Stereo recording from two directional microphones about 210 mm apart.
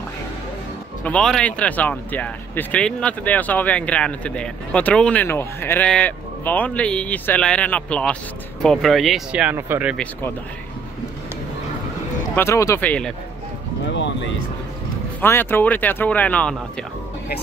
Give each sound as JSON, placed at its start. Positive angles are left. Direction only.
{"t": 1.0, "sound": "speech", "side_deg": 5}
{"t": 12.4, "sound": "speech", "side_deg": 15}
{"t": 13.8, "sound": "speech", "side_deg": 60}
{"t": 15.1, "sound": "speech", "side_deg": 10}